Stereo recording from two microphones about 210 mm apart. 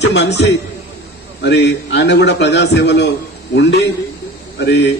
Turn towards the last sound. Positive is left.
turn(degrees=55)  # may be behind; listen again after turning